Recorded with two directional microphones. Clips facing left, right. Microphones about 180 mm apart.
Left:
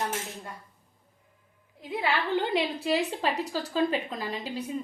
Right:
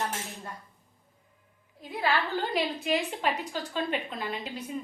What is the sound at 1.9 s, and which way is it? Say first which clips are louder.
A woman's voice: left 1 dB; 25° left (ahead or behind).